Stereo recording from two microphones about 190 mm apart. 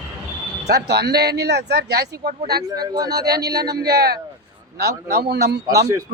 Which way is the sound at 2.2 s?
40° right (ahead or behind).